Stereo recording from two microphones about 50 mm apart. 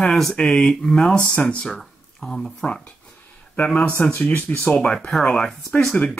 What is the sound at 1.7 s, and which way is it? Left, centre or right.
Speech, centre.